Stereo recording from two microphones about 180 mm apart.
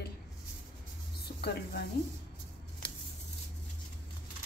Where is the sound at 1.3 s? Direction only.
55° left (ahead or behind).